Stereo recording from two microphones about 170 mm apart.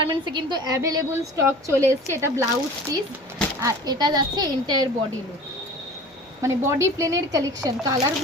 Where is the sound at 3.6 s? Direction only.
20° right (ahead or behind).